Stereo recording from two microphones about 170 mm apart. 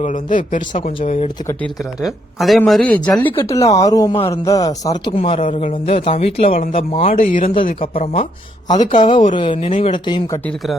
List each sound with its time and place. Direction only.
0.0 s speech: 50° left (ahead or behind)
2.0 s speech: centre (ahead or behind)
3.3 s speech: 20° left (ahead or behind)
5.1 s speech: 35° left (ahead or behind)
7.1 s speech: 50° left (ahead or behind)
7.4 s speech: 30° left (ahead or behind)